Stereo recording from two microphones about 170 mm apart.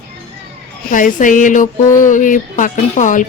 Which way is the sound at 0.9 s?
50° left (ahead or behind).